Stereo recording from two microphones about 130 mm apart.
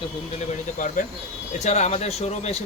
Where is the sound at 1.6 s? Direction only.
60° left (ahead or behind).